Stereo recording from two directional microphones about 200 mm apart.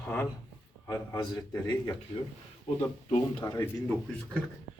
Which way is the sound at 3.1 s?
20° left (ahead or behind).